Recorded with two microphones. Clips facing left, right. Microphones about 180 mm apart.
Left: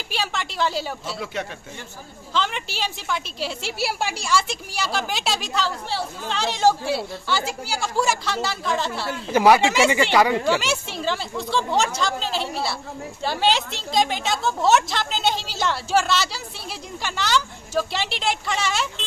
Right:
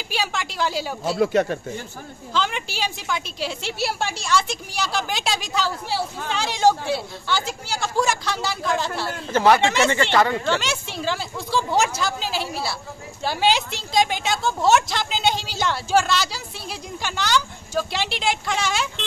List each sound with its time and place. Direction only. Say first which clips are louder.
0.1 s a sound: right 1 dB; centre (ahead or behind)
1.0 s speech: right 10 dB; 50° right (ahead or behind)
2.3 s a woman's voice: right 1 dB; centre (ahead or behind)